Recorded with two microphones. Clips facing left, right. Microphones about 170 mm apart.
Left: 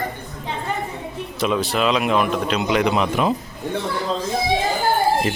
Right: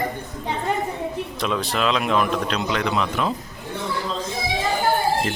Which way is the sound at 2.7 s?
15° left (ahead or behind).